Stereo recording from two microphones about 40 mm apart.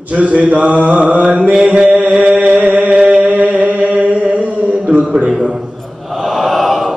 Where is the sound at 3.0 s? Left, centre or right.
Right.